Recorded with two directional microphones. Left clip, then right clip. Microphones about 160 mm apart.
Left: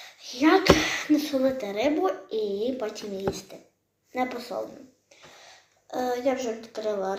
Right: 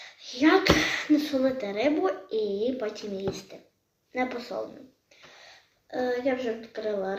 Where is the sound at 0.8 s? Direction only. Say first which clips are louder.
Even; 15° right (ahead or behind).